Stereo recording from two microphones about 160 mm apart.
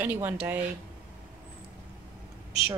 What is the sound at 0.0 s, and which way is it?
Speech, 10° right (ahead or behind).